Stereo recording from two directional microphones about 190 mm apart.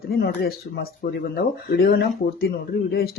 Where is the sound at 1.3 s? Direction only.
55° left (ahead or behind).